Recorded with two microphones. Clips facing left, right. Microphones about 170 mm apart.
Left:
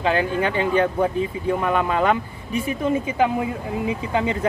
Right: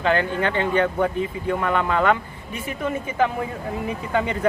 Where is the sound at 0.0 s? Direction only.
15° left (ahead or behind).